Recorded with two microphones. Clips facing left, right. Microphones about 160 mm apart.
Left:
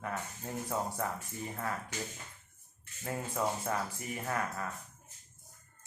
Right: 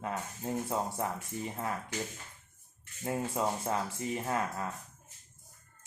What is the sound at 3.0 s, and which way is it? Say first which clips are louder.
Speech: right 2 dB; 25° right (ahead or behind).